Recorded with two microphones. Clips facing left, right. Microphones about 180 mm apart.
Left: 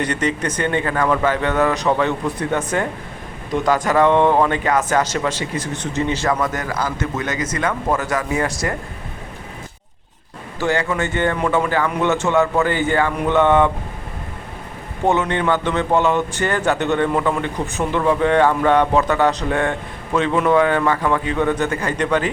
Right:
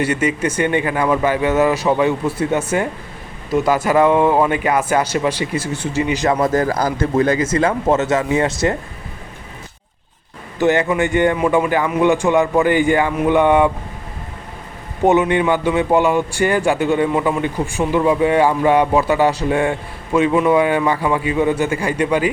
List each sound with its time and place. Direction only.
0.0 s a man's voice: 10° right (ahead or behind)
6.2 s speech: 30° right (ahead or behind)
10.6 s a man's voice: 20° right (ahead or behind)
15.0 s a man's voice: 15° right (ahead or behind)